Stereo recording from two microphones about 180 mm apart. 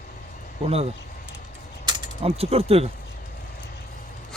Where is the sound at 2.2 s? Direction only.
35° right (ahead or behind).